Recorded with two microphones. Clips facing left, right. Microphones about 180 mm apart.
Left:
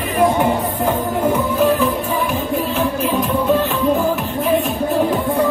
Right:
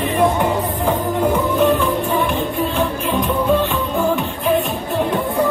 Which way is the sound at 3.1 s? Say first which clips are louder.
Right 1 dB; centre (ahead or behind).